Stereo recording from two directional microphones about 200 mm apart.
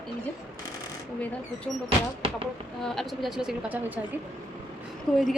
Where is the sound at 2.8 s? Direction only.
Centre (ahead or behind).